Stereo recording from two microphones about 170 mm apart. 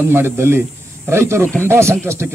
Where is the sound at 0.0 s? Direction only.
15° right (ahead or behind).